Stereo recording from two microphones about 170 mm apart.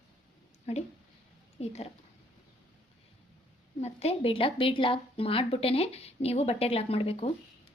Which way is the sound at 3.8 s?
40° left (ahead or behind).